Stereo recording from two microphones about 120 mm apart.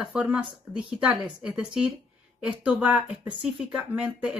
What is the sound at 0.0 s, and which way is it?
Speech, 5° right (ahead or behind).